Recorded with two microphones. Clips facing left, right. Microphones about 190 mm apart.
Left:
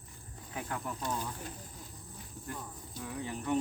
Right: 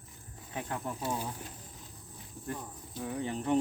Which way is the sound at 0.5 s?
25° right (ahead or behind).